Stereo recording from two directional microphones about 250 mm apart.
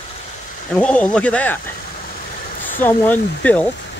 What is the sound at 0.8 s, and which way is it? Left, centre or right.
Speech, centre.